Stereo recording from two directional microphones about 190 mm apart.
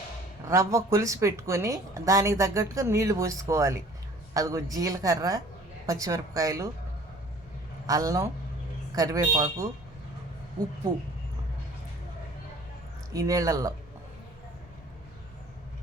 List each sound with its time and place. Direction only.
0.4 s speech: 15° right (ahead or behind)
7.9 s speech: 20° right (ahead or behind)
13.1 s speech: 15° right (ahead or behind)